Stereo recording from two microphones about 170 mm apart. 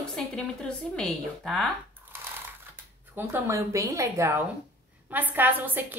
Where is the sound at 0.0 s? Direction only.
5° left (ahead or behind).